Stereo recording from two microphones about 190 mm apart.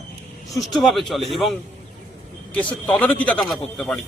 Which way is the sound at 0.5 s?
Centre (ahead or behind).